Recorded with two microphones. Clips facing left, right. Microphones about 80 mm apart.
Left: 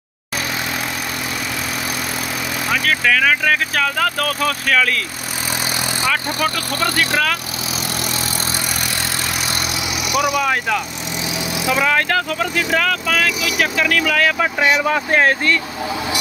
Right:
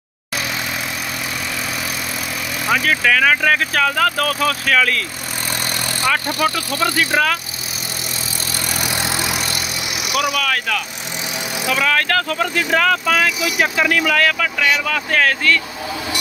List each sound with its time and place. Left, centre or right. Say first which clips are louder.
2.7 s speech: right 1 dB; centre
6.4 s speech: right 2 dB; centre
10.1 s speech: left 2 dB; centre
10.4 s speech: left 2 dB; centre
14.4 s speech: left 2 dB; left